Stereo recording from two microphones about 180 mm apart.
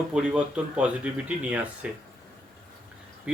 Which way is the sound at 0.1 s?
5° right (ahead or behind).